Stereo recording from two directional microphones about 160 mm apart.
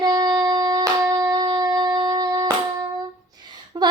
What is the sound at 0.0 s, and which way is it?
Shofar, 25° right (ahead or behind).